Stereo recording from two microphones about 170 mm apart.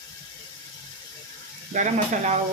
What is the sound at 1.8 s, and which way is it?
Speech, 45° right (ahead or behind).